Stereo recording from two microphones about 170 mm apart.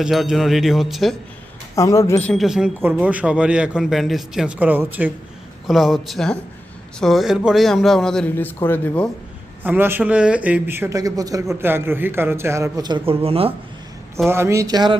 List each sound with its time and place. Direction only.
0.0 s a man's voice: centre (ahead or behind)
1.7 s a man's voice: 20° left (ahead or behind)
9.6 s a man's voice: 10° right (ahead or behind); by 13.5 s 35° right (ahead or behind)
14.3 s speech: 15° right (ahead or behind)